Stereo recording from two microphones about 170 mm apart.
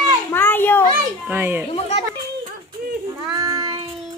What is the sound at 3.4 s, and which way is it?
Child singing, 20° right (ahead or behind).